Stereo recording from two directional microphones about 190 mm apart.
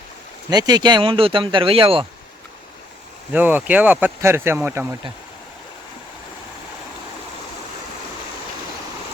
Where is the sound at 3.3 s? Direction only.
10° right (ahead or behind).